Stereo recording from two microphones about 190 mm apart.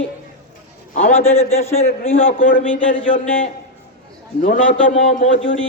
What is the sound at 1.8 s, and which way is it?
A man's voice, 50° left (ahead or behind).